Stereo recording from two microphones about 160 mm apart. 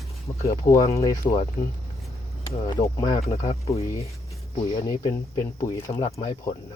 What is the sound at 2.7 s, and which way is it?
Speech, 20° left (ahead or behind).